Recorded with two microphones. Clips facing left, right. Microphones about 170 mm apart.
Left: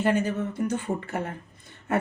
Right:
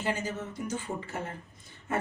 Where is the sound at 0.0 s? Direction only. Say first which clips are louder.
Left 8 dB; 60° left (ahead or behind).